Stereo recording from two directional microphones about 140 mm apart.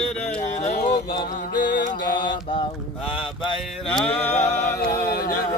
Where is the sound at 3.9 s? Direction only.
10° left (ahead or behind).